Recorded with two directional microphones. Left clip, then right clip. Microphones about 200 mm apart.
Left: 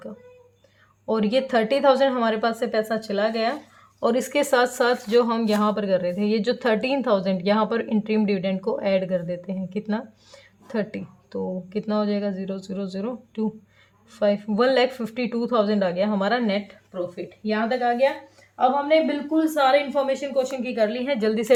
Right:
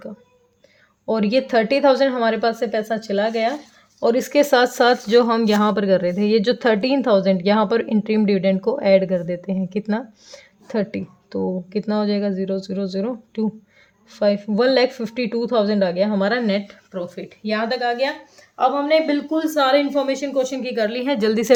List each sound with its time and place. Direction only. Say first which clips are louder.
1.0 s speech: right 3 dB; 20° right (ahead or behind)